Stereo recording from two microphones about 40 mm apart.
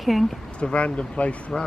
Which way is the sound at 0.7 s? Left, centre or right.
Left.